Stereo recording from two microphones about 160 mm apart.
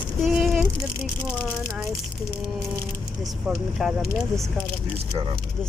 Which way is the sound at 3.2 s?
Centre (ahead or behind).